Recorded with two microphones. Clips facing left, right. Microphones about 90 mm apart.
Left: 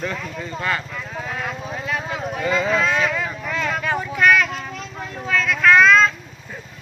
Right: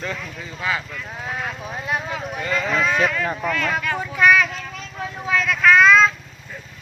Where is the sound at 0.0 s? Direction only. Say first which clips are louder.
Left 3 dB; centre (ahead or behind).